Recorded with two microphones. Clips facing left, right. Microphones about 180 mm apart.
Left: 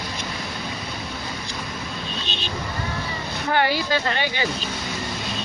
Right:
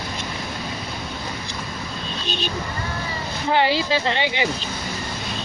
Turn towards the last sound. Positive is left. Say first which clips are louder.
# right 2 dB
turn(degrees=-20)  # may be behind; listen again after turning